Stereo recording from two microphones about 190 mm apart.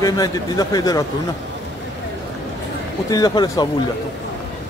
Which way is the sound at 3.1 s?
20° left (ahead or behind).